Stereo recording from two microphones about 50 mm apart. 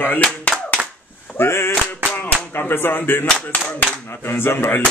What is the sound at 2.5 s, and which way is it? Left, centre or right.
Speech, left.